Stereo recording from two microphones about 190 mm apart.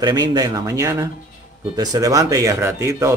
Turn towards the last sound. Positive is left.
turn(degrees=-15)  # may be behind; listen again after turning